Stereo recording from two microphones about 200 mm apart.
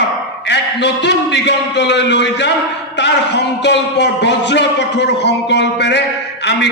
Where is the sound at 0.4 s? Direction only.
60° left (ahead or behind).